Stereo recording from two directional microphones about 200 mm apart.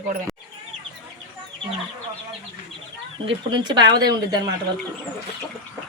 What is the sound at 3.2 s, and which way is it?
Speech, 25° right (ahead or behind).